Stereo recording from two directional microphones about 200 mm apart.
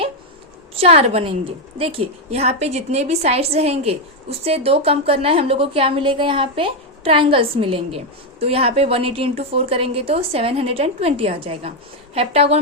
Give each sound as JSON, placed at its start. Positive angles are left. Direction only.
{"t": 0.8, "sound": "a woman's voice", "side_deg": -30}